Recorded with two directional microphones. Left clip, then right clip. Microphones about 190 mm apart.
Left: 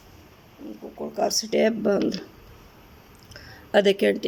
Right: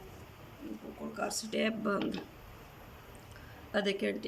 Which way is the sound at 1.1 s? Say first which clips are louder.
Left 13 dB; 35° left (ahead or behind).